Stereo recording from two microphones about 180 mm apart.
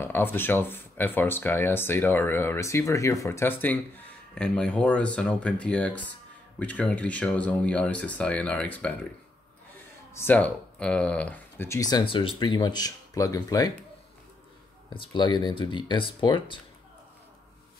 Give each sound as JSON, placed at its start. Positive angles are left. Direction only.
{"t": 0.0, "sound": "speech", "side_deg": 10}
{"t": 10.1, "sound": "speech", "side_deg": 10}
{"t": 15.0, "sound": "speech", "side_deg": 25}